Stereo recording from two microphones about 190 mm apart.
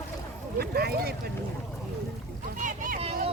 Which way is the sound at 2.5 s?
45° right (ahead or behind).